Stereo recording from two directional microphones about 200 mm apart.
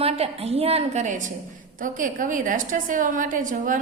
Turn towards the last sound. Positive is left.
turn(degrees=-40)  # may be behind; listen again after turning